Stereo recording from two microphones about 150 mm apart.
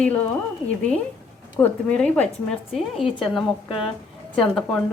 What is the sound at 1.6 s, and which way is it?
Speech, 10° left (ahead or behind).